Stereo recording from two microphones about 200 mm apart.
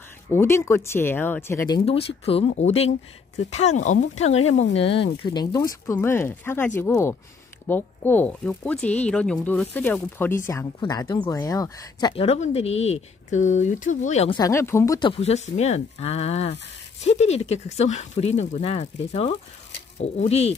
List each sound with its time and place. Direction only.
0.3 s speech: 10° left (ahead or behind)
1.9 s speech: 30° left (ahead or behind)
14.3 s speech: 15° left (ahead or behind)
15.0 s speech: 25° left (ahead or behind)